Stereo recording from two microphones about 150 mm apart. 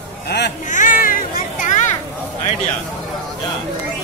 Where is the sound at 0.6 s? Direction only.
55° left (ahead or behind).